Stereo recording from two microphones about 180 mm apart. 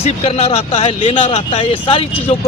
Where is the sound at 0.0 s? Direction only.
35° left (ahead or behind).